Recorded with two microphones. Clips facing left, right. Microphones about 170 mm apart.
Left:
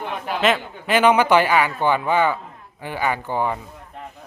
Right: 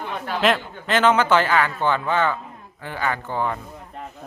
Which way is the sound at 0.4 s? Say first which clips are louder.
Even; 5° left (ahead or behind).